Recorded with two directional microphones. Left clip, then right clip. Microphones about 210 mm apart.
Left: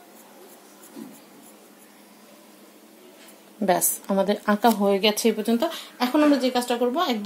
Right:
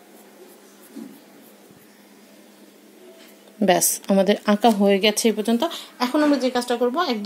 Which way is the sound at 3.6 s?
30° right (ahead or behind).